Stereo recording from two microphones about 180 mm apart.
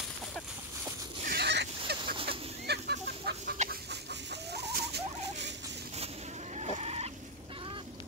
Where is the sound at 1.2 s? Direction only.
65° right (ahead or behind).